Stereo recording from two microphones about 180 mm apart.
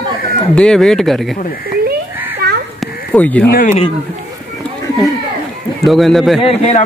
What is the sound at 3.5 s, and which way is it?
Speech, 50° left (ahead or behind).